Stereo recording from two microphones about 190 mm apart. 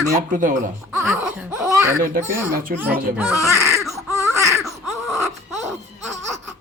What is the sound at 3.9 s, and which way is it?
Baby cry, 15° right (ahead or behind).